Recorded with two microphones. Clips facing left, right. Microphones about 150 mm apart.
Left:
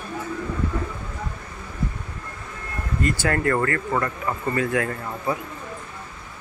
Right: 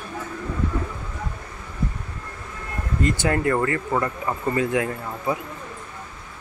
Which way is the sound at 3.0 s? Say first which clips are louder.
Right 1 dB; 20° right (ahead or behind).